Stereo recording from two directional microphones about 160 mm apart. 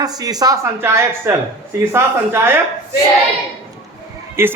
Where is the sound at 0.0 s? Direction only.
25° right (ahead or behind).